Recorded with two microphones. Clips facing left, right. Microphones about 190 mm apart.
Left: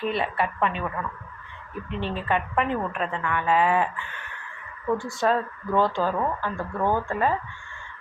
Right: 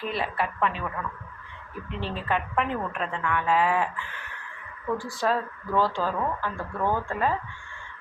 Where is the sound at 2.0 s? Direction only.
Centre (ahead or behind).